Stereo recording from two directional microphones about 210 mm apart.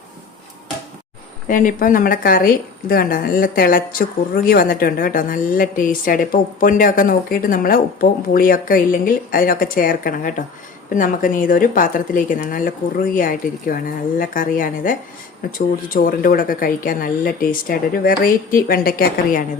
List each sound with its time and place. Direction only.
1.5 s a woman's voice: 40° left (ahead or behind)